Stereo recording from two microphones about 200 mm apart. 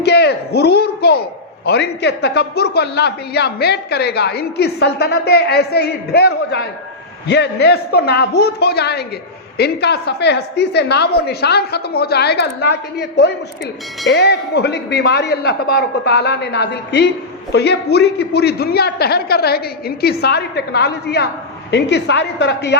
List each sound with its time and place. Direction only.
0.0 s a man's voice: 55° left (ahead or behind)